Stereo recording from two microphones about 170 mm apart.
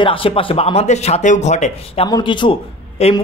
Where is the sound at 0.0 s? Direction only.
30° left (ahead or behind).